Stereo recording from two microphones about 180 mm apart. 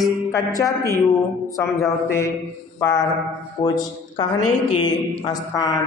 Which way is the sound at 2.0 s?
15° left (ahead or behind).